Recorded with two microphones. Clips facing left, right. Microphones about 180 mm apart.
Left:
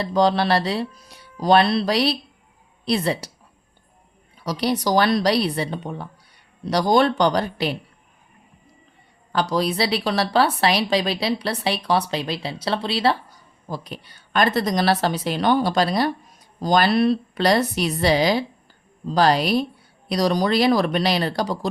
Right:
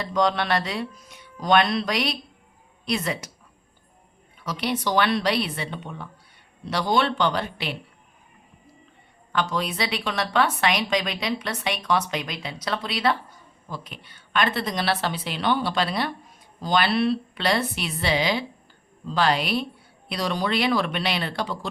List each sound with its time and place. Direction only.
0.0 s a woman's voice: 30° left (ahead or behind)
4.4 s a woman's voice: 35° left (ahead or behind)
9.3 s a woman's voice: 35° left (ahead or behind)